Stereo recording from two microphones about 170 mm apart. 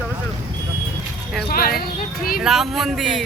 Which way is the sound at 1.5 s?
60° left (ahead or behind).